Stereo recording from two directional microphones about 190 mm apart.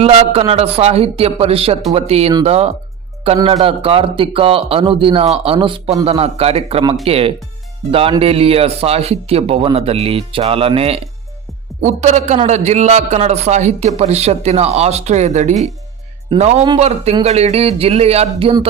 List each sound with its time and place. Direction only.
0.0 s a man's voice: 30° right (ahead or behind)